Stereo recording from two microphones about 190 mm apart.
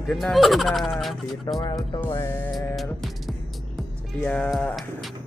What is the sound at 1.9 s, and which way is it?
Speech, 15° left (ahead or behind).